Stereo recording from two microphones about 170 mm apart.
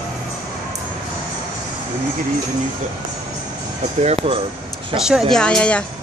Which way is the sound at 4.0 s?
40° right (ahead or behind).